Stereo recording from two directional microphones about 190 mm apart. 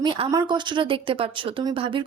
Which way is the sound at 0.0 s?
25° right (ahead or behind).